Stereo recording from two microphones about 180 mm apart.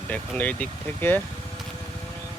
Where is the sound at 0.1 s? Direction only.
10° left (ahead or behind).